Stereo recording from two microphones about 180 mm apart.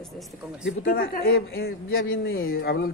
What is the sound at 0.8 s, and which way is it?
Speech, 55° left (ahead or behind).